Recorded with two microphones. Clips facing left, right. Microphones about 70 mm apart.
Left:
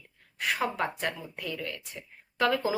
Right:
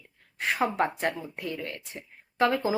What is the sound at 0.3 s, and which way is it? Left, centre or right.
Speech, right.